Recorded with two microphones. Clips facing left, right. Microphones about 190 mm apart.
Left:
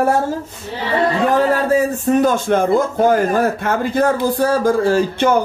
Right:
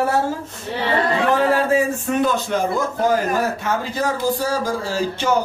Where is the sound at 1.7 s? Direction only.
40° left (ahead or behind).